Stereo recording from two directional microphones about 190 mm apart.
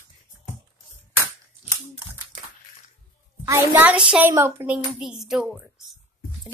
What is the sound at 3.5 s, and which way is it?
A woman's voice, 10° right (ahead or behind).